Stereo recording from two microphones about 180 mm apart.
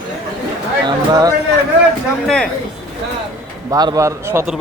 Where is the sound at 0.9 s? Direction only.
20° right (ahead or behind).